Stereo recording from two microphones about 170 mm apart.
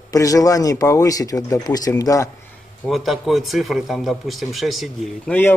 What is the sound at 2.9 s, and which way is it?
Speech, centre (ahead or behind).